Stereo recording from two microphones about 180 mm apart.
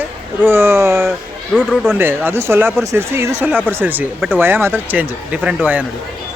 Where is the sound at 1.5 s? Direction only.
5° left (ahead or behind).